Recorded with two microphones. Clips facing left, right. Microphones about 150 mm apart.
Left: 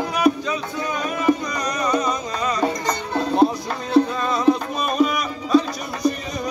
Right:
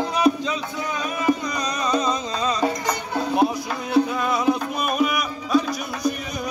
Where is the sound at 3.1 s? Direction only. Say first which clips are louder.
Left 3 dB; 10° right (ahead or behind).